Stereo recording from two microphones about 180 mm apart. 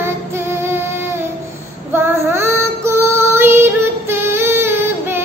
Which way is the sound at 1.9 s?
15° right (ahead or behind).